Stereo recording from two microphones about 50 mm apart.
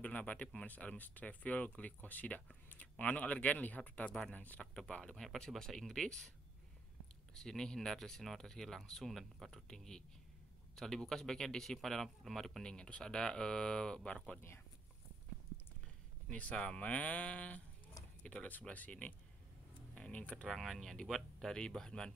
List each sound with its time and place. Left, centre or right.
0.0 s a sound: left
0.6 s speech: left
4.1 s speech: centre
5.6 s speech: centre
7.3 s speech: centre
16.3 s speech: left
20.4 s speech: centre